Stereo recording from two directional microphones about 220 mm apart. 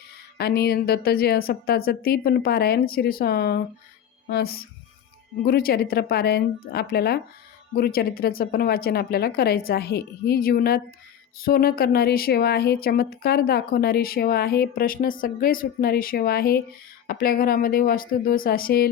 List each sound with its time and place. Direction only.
0.3 s speech: 45° left (ahead or behind)